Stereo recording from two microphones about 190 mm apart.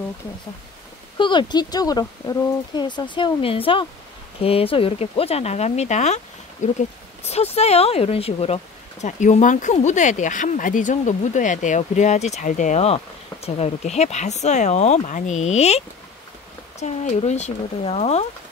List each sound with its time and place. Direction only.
1.1 s speech: 25° left (ahead or behind)
16.8 s speech: 40° left (ahead or behind)